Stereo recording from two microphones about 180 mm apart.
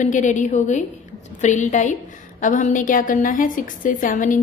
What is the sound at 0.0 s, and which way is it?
A woman's voice, 45° left (ahead or behind).